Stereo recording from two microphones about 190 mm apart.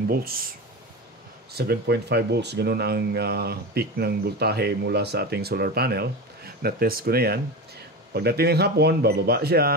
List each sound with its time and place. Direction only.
0.1 s speech: 50° right (ahead or behind)
1.5 s speech: 60° right (ahead or behind)